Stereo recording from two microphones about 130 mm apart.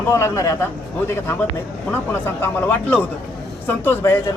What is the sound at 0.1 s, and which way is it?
Speech, 20° left (ahead or behind).